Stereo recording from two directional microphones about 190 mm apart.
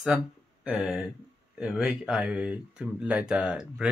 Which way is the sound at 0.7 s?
5° right (ahead or behind).